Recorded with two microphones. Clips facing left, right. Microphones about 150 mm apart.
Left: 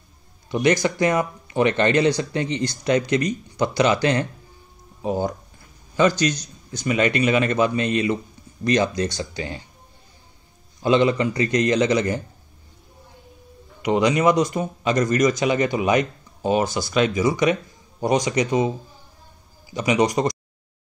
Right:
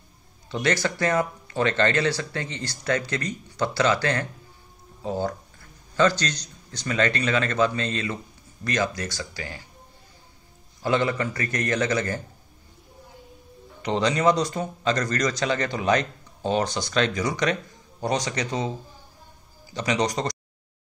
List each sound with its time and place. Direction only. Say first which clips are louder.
0.5 s speech: left 5 dB; 15° left (ahead or behind)
10.8 s speech: left 6 dB; 20° left (ahead or behind)
13.8 s speech: left 3 dB; 15° left (ahead or behind)
19.7 s speech: left 5 dB; 10° left (ahead or behind)